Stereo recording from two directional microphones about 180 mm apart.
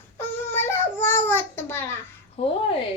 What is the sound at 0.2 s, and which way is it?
Babbling, 10° left (ahead or behind).